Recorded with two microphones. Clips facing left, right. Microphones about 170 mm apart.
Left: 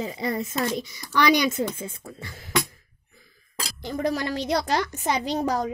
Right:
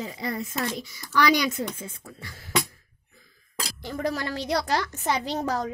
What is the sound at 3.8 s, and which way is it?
Speech, 20° left (ahead or behind).